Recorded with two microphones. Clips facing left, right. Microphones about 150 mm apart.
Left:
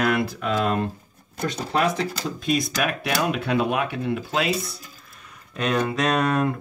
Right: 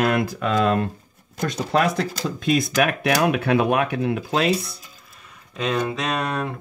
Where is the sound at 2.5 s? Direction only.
55° right (ahead or behind).